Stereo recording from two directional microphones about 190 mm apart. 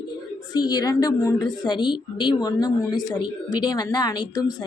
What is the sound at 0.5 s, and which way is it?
Speech, 20° left (ahead or behind).